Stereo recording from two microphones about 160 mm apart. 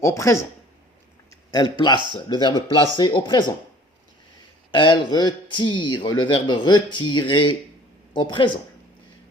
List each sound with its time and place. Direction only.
0.0 s a man's voice: 20° left (ahead or behind)
1.3 s a sound: 25° left (ahead or behind)
2.3 s a man's voice: 25° left (ahead or behind)
4.7 s a man's voice: 30° left (ahead or behind)